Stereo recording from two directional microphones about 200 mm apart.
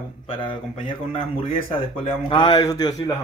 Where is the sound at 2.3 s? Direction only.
20° left (ahead or behind).